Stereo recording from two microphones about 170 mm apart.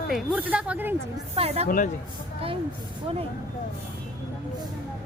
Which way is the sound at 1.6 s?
50° left (ahead or behind).